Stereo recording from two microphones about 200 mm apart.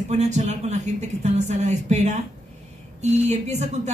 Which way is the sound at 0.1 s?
35° right (ahead or behind).